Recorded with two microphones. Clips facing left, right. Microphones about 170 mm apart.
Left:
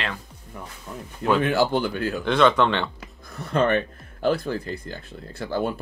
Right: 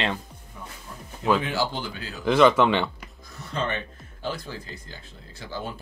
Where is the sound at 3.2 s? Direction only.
60° left (ahead or behind).